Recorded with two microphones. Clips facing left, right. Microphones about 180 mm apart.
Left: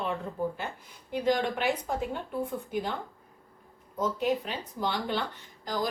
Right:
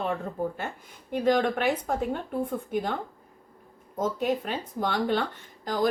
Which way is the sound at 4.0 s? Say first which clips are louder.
Right 1 dB; 50° right (ahead or behind).